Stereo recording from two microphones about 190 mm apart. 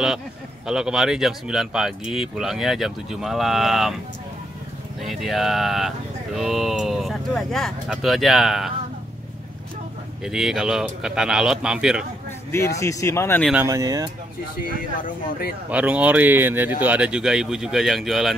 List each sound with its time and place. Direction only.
0.7 s speech: 5° right (ahead or behind)
5.0 s speech: centre (ahead or behind)
10.2 s speech: 5° right (ahead or behind)
12.6 s speech: 15° left (ahead or behind)
13.7 s speech: 20° right (ahead or behind)
15.0 s speech: 45° left (ahead or behind)
15.7 s speech: 5° right (ahead or behind)